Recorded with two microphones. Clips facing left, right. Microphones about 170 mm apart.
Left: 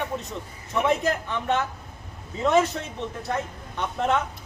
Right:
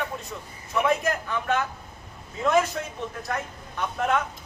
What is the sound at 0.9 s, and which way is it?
Speech, 20° left (ahead or behind).